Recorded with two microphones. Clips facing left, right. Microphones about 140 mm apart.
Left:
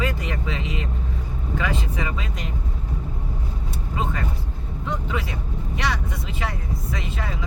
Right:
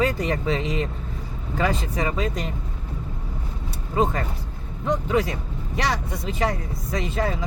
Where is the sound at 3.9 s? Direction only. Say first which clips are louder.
Right 5 dB; 40° right (ahead or behind).